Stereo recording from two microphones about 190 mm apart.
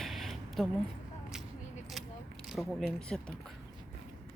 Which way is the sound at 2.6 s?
Centre (ahead or behind).